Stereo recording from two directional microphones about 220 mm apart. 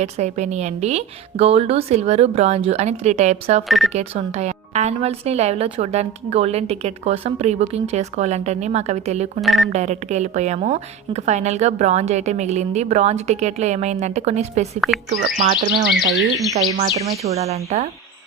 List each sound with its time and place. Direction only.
0.0 s a woman's voice: 30° right (ahead or behind)
3.7 s speech: centre (ahead or behind)
3.9 s a woman's voice: 30° right (ahead or behind)
9.4 s speech: centre (ahead or behind)
9.7 s a woman's voice: 30° right (ahead or behind)
16.5 s a woman's voice: 30° right (ahead or behind)